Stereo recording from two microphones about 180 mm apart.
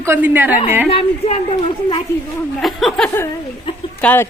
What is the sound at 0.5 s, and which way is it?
Speech, 45° left (ahead or behind).